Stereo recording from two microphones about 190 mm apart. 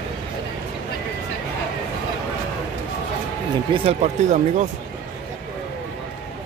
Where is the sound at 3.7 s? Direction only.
35° right (ahead or behind).